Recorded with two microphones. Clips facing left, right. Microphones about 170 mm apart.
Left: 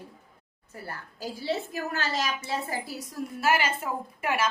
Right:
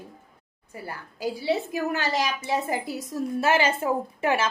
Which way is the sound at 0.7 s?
15° right (ahead or behind).